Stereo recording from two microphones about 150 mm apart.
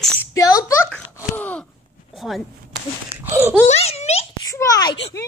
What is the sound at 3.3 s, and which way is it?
Speech, 15° right (ahead or behind).